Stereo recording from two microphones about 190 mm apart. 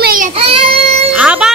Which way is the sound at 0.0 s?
50° right (ahead or behind).